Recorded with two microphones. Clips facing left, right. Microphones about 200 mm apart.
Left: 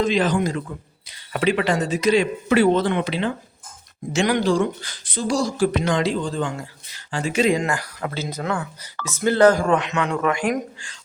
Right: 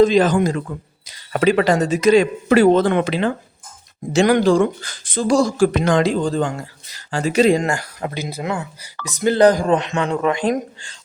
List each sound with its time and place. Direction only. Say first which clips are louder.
0.0 s speech: right 6 dB; 45° right (ahead or behind); by 8.1 s 25° right (ahead or behind)
8.1 s speech: right 1 dB; 15° right (ahead or behind)
9.6 s speech: right 2 dB; 30° right (ahead or behind)